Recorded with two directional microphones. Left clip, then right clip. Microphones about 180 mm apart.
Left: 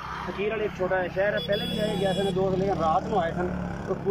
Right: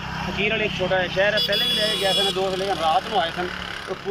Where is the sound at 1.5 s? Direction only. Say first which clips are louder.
Right 6 dB; 15° left (ahead or behind).